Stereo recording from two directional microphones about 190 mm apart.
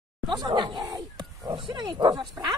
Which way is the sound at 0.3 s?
20° right (ahead or behind).